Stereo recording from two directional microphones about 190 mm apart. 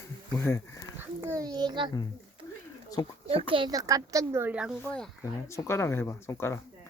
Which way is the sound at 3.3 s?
30° right (ahead or behind).